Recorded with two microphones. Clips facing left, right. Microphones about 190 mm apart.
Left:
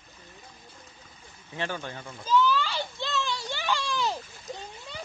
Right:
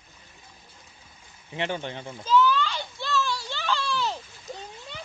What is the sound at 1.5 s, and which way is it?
Speech, 20° right (ahead or behind).